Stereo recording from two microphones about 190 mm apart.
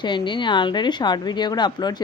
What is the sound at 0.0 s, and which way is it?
A woman's voice, 25° left (ahead or behind).